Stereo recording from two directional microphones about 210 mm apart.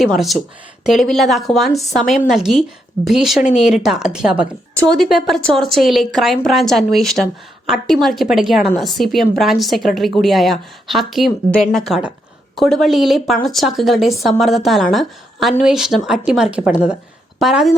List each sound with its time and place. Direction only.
0.9 s a woman's voice: centre (ahead or behind)